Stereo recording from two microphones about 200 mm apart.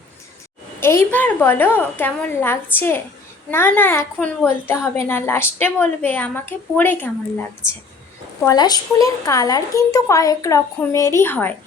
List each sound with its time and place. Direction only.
0.8 s a woman's voice: 10° left (ahead or behind)
8.4 s a woman's voice: 20° left (ahead or behind)